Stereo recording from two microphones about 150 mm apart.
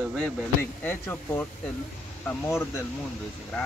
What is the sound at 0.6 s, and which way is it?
Speech, 15° left (ahead or behind).